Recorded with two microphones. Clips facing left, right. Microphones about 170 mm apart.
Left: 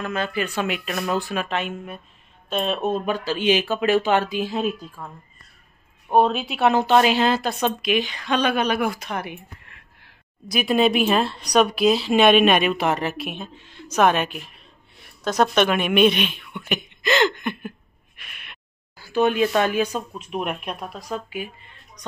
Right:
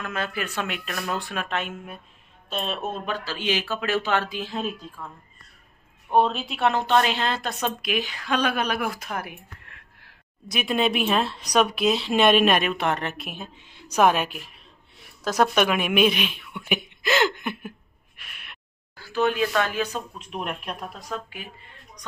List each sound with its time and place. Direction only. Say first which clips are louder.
0.0 s speech: left 4 dB; centre (ahead or behind)
3.1 s speech: left 6 dB; 15° left (ahead or behind)
6.1 s speech: left 3 dB; 40° left (ahead or behind)
6.4 s speech: left 4 dB; 5° left (ahead or behind)
13.6 s a woman's voice: left 1 dB; 15° right (ahead or behind)
18.2 s gasp: left 1 dB; centre (ahead or behind)
18.9 s speech: left 4 dB; 15° left (ahead or behind)